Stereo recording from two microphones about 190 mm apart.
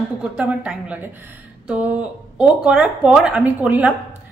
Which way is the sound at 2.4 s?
5° right (ahead or behind).